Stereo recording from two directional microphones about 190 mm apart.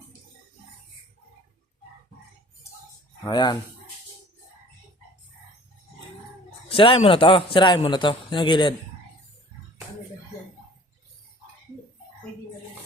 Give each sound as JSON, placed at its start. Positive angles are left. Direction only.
{"t": 3.2, "sound": "a man's voice", "side_deg": 20}
{"t": 6.7, "sound": "a man's voice", "side_deg": 30}